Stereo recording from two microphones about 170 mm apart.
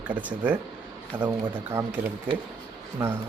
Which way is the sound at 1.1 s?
30° right (ahead or behind).